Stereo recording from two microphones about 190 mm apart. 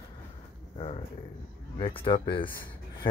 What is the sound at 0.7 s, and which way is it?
Speech, 30° left (ahead or behind).